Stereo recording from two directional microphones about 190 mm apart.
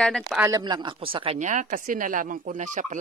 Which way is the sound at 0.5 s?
20° right (ahead or behind).